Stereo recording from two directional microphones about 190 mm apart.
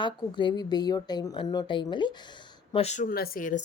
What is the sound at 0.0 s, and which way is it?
Speech, 25° left (ahead or behind).